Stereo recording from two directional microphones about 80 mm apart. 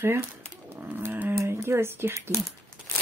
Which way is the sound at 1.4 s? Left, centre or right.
Right.